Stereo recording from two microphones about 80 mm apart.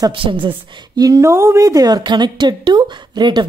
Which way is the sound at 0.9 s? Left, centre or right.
Right.